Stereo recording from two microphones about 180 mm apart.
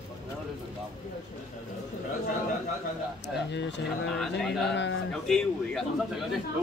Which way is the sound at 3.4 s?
75° left (ahead or behind).